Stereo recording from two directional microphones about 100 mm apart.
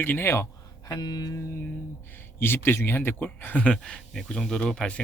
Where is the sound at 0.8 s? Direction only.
40° left (ahead or behind).